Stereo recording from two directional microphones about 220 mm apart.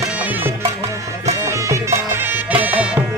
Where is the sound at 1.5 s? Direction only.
15° right (ahead or behind).